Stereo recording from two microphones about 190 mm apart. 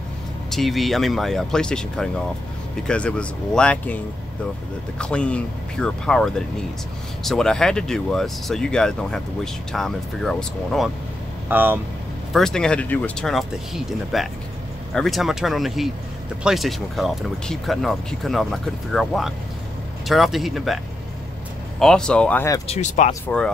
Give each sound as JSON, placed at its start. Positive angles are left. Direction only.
{"t": 0.5, "sound": "speech", "side_deg": 0}
{"t": 11.4, "sound": "speech", "side_deg": -10}
{"t": 12.3, "sound": "speech", "side_deg": 0}
{"t": 22.7, "sound": "speech", "side_deg": 35}
{"t": 23.2, "sound": "speech", "side_deg": 5}